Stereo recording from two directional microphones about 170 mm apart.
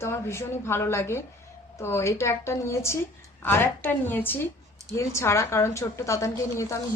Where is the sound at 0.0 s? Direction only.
15° left (ahead or behind).